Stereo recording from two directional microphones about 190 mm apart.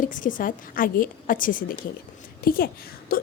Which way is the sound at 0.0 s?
45° left (ahead or behind).